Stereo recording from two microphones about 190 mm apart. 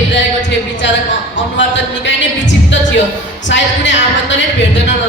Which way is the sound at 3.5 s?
70° left (ahead or behind).